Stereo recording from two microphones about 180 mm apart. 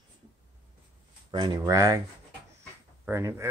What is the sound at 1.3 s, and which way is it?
Speech, 25° right (ahead or behind).